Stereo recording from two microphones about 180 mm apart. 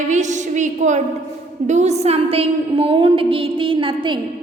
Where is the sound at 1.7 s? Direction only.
40° right (ahead or behind).